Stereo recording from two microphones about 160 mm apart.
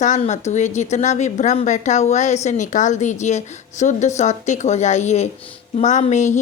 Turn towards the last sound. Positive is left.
turn(degrees=50)  # may be behind; listen again after turning